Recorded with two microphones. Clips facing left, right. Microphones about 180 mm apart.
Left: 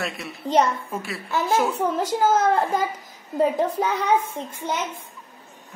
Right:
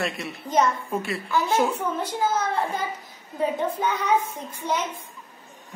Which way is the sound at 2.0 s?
90° left.